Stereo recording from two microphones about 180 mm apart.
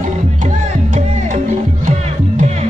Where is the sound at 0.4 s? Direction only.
40° right (ahead or behind).